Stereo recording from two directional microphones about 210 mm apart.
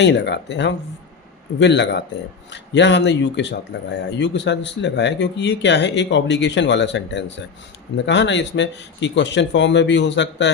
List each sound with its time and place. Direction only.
0.0 s speech: 55° left (ahead or behind)